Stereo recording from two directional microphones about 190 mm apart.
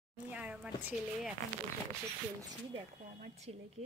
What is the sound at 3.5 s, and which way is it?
Speech, 35° right (ahead or behind).